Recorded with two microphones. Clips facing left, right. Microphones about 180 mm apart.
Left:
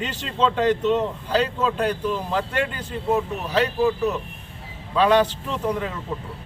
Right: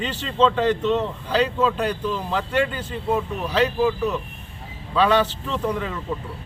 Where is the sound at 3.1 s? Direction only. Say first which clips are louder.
Left 1 dB; 10° left (ahead or behind).